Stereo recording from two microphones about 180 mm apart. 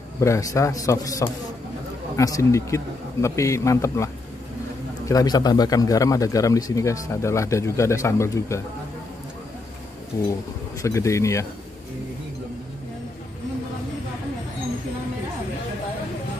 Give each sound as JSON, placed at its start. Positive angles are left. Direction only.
{"t": 0.2, "sound": "speech", "side_deg": 15}
{"t": 10.1, "sound": "speech", "side_deg": 15}